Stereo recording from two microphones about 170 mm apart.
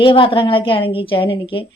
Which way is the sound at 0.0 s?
30° left (ahead or behind).